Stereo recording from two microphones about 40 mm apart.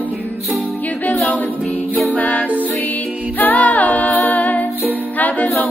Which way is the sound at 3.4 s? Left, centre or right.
Left.